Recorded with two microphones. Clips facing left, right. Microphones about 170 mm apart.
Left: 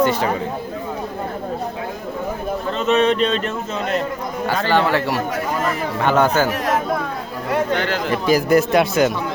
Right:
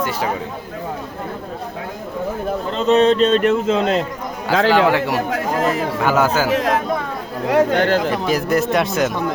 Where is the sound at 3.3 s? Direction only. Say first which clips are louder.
Right 7 dB; 50° right (ahead or behind).